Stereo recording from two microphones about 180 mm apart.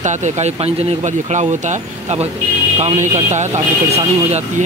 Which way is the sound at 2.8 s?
40° right (ahead or behind).